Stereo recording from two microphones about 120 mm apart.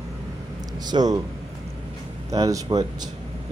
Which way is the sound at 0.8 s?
35° right (ahead or behind).